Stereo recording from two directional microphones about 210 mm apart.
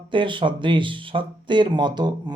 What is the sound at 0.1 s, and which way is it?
Speech, 25° right (ahead or behind).